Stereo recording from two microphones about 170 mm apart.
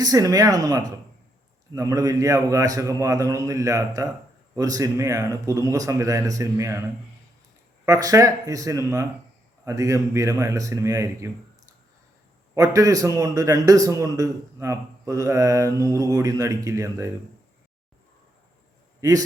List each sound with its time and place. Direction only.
0.0 s a man's voice: 20° right (ahead or behind)
7.9 s a man's voice: 20° right (ahead or behind)
12.5 s a man's voice: 20° right (ahead or behind)
18.9 s a man's voice: 20° right (ahead or behind)